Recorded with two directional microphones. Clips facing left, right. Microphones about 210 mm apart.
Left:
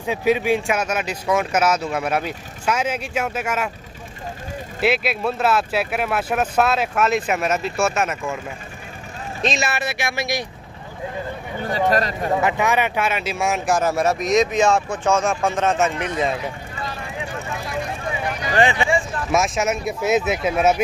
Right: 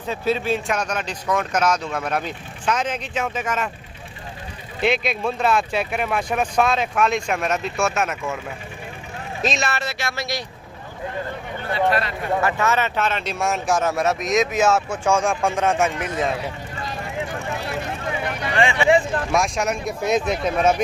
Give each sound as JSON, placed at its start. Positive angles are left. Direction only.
{"t": 0.0, "sound": "speech", "side_deg": 15}
{"t": 4.7, "sound": "speech", "side_deg": 5}
{"t": 9.4, "sound": "a man's voice", "side_deg": 0}
{"t": 9.7, "sound": "speech", "side_deg": 15}
{"t": 11.7, "sound": "speech", "side_deg": 40}
{"t": 12.4, "sound": "speech", "side_deg": 15}
{"t": 18.5, "sound": "speech", "side_deg": 35}
{"t": 19.3, "sound": "speech", "side_deg": 5}